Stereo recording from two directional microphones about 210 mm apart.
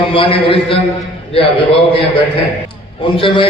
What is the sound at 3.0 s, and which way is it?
Speech, 25° left (ahead or behind).